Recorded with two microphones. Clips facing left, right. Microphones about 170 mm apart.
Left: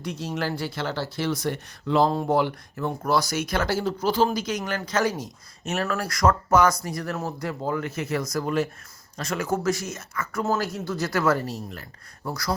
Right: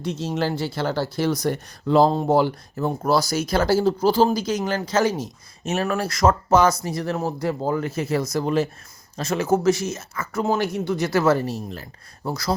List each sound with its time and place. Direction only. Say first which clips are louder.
0.0 s speech: right 4 dB; 25° right (ahead or behind)